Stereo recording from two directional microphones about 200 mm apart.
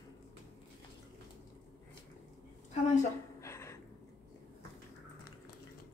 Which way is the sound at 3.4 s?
15° left (ahead or behind).